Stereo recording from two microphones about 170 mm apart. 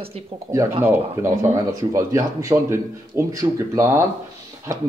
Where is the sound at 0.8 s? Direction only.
15° right (ahead or behind).